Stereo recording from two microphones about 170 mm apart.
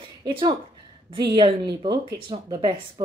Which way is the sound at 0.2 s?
25° right (ahead or behind).